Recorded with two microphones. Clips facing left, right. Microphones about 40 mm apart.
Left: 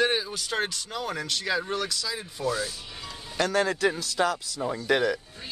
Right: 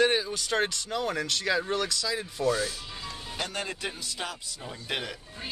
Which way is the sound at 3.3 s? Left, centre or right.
Left.